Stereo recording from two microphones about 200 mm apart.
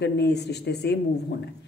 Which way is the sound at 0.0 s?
55° left (ahead or behind).